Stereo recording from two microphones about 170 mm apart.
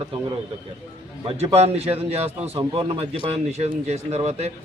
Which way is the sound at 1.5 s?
40° right (ahead or behind).